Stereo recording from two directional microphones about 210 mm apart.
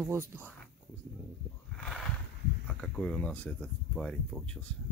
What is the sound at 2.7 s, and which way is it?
Speech, 5° left (ahead or behind).